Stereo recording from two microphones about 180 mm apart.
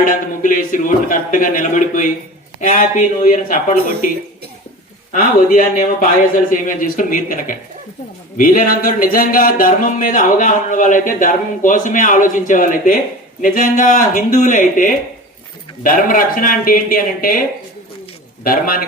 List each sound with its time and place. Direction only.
0.0 s speech: 50° left (ahead or behind)
18.4 s speech: 55° left (ahead or behind)